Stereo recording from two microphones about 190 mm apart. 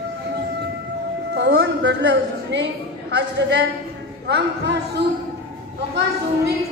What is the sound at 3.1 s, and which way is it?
A woman's voice, 65° right (ahead or behind).